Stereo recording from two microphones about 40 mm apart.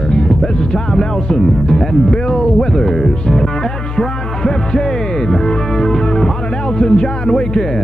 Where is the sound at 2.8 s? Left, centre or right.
Centre.